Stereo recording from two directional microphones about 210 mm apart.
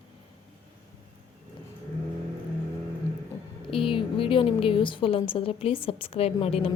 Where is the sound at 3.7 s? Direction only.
25° left (ahead or behind).